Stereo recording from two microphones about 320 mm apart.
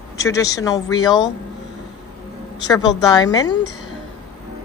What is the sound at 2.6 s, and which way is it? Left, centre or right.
Speech, centre.